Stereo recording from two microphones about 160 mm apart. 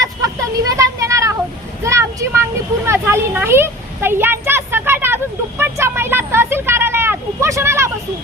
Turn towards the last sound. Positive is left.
turn(degrees=-15)  # may be behind; listen again after turning